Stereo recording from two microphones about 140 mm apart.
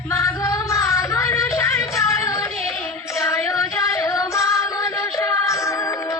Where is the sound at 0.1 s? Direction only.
20° left (ahead or behind).